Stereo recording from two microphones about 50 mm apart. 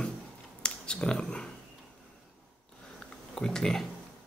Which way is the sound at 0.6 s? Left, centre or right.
Centre.